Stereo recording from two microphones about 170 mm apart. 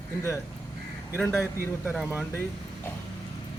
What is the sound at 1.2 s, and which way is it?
Speech, 15° left (ahead or behind).